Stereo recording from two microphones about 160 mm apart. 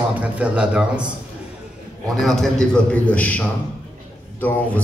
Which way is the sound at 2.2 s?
Centre (ahead or behind).